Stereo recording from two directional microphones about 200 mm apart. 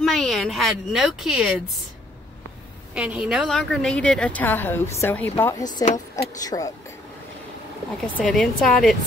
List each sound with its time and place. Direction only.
0.0 s a woman's voice: centre (ahead or behind)
2.9 s a woman's voice: 5° right (ahead or behind); by 6.7 s 20° left (ahead or behind)
8.2 s a woman's voice: centre (ahead or behind)